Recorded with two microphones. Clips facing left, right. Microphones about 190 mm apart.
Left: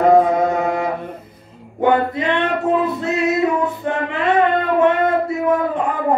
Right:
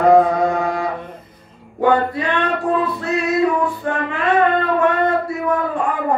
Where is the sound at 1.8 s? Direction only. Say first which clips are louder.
Even; 20° left (ahead or behind).